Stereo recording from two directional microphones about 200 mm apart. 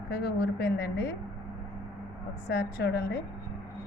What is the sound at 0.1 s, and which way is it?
A woman's voice, 55° left (ahead or behind).